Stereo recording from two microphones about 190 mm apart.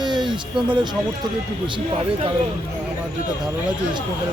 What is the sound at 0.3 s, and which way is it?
Speech, 25° right (ahead or behind).